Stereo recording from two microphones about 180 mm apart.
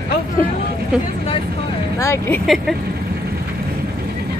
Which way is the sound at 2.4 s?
Centre (ahead or behind).